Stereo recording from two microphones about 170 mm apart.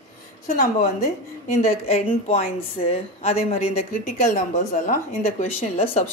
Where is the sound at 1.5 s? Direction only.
45° left (ahead or behind).